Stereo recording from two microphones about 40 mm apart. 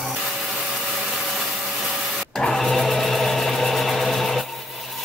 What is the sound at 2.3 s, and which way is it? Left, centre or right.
Sewing machine, centre.